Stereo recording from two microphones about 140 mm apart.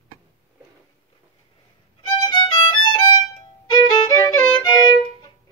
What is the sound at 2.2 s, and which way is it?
Violin, 35° left (ahead or behind).